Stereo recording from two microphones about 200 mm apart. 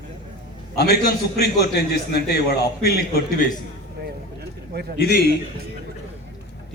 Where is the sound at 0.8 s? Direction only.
50° left (ahead or behind).